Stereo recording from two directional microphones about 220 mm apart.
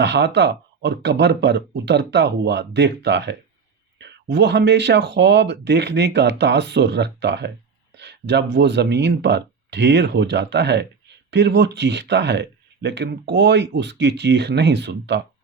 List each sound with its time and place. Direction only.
0.0 s speech: 50° right (ahead or behind)